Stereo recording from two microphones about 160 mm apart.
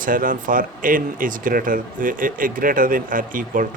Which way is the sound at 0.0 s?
60° right (ahead or behind).